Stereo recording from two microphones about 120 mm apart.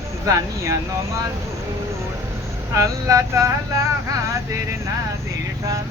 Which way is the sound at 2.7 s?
25° right (ahead or behind).